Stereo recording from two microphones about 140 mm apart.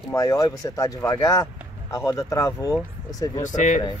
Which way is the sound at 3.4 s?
65° left (ahead or behind).